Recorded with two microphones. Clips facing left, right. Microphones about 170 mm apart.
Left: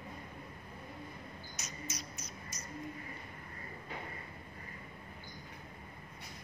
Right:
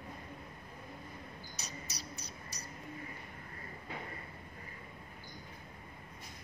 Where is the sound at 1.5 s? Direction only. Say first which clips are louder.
Left 3 dB; 35° right (ahead or behind).